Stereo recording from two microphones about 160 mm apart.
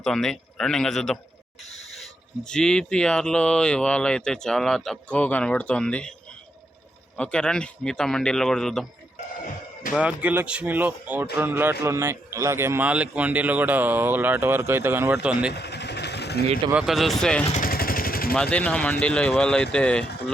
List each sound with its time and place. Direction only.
0.0 s speech: 5° left (ahead or behind)
7.2 s speech: 5° left (ahead or behind)
10.0 s speech: 10° right (ahead or behind)
15.5 s vehicle: 90° left
16.7 s speech: centre (ahead or behind)
17.5 s vehicle: 60° left (ahead or behind)
18.5 s speech: 10° left (ahead or behind)